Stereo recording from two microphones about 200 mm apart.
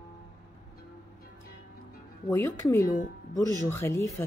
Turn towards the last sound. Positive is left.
turn(degrees=15)  # may be behind; listen again after turning